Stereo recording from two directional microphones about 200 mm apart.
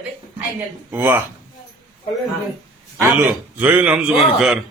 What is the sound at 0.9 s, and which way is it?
Speech, 10° right (ahead or behind).